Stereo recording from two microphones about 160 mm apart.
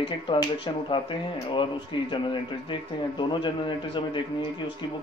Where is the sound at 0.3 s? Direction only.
30° left (ahead or behind).